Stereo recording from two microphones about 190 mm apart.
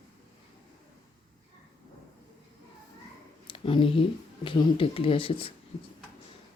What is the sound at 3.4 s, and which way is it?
Speech, 30° left (ahead or behind).